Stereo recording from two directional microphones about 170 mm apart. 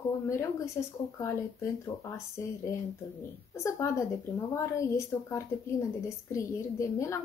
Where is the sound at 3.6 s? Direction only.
20° left (ahead or behind).